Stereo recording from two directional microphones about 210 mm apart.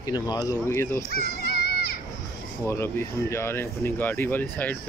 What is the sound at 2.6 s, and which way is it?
Speech, 10° left (ahead or behind).